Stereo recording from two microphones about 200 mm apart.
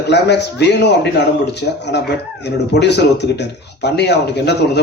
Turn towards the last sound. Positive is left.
turn(degrees=60)  # may be behind; listen again after turning